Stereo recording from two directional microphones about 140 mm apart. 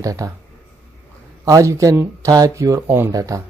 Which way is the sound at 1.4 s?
20° right (ahead or behind).